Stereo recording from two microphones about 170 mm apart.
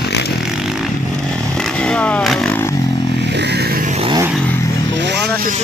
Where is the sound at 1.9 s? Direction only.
5° left (ahead or behind).